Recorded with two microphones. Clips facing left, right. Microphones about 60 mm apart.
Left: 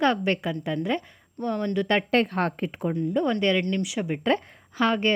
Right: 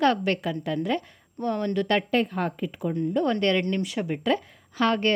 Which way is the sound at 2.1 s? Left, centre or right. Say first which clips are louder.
Left 2 dB; left.